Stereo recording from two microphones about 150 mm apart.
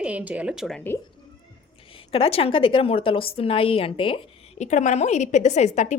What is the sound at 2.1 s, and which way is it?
A woman's voice, 40° left (ahead or behind).